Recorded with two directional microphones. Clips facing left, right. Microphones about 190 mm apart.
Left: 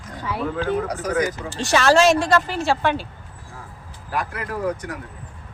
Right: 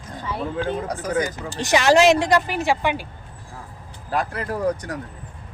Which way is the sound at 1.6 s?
15° right (ahead or behind).